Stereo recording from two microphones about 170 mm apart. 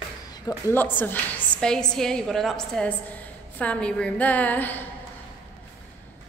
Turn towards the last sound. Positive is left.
turn(degrees=10)  # may be behind; listen again after turning